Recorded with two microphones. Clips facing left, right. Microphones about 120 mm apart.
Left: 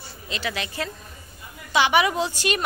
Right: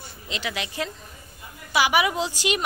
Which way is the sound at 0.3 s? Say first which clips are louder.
Left 1 dB; 15° right (ahead or behind).